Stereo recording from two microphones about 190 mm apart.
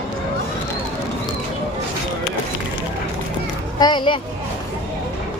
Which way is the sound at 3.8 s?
25° left (ahead or behind).